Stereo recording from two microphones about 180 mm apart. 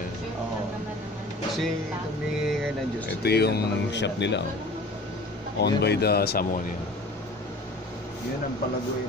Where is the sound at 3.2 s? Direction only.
65° left (ahead or behind).